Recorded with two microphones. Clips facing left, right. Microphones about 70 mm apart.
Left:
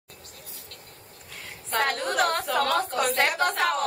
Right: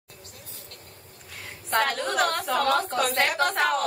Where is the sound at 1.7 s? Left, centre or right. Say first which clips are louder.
Right 1 dB; centre.